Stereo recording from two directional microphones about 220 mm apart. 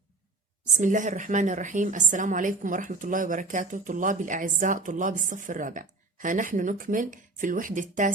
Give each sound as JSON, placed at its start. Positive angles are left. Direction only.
{"t": 0.6, "sound": "a woman's voice", "side_deg": -35}